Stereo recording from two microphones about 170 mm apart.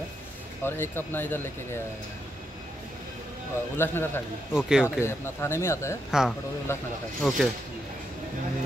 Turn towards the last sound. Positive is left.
turn(degrees=0)  # may be behind; listen again after turning